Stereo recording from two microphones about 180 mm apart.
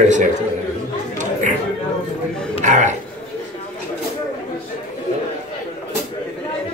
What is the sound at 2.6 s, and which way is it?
Speech, 45° right (ahead or behind).